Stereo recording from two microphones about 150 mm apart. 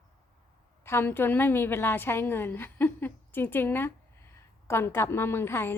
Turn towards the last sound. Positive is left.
turn(degrees=15)  # may be behind; listen again after turning